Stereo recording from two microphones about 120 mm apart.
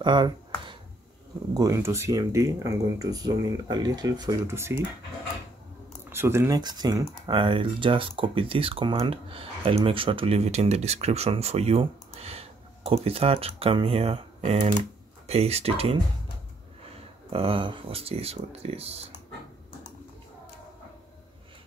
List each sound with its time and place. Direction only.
0.0 s a sound: 40° right (ahead or behind)
1.5 s speech: 30° right (ahead or behind)
6.1 s speech: 20° right (ahead or behind)
6.6 s speech: 35° right (ahead or behind)
7.3 s speech: 45° right (ahead or behind)
17.3 s speech: 50° right (ahead or behind)